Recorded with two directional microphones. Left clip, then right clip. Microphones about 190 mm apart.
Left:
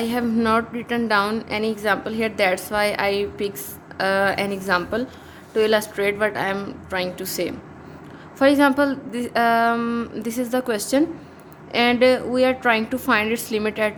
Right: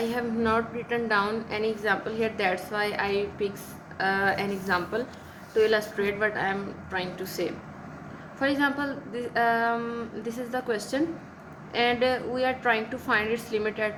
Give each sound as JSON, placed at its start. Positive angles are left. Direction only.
{"t": 0.0, "sound": "a woman's voice", "side_deg": 45}